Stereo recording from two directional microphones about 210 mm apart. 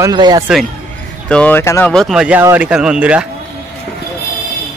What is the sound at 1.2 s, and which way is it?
Speech, 5° left (ahead or behind).